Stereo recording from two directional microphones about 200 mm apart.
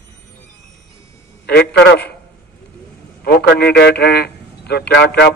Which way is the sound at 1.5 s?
55° left (ahead or behind).